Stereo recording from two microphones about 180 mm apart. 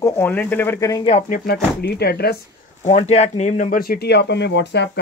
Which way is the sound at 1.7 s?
60° left (ahead or behind).